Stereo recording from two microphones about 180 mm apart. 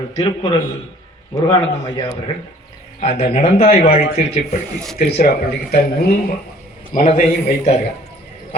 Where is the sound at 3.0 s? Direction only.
35° left (ahead or behind).